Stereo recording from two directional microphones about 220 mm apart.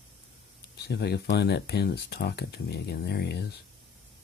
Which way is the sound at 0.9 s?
50° left (ahead or behind).